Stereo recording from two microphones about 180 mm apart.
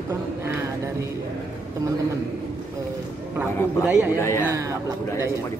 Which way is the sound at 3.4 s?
5° right (ahead or behind).